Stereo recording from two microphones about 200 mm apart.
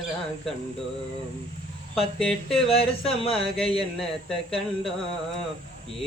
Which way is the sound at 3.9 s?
Centre (ahead or behind).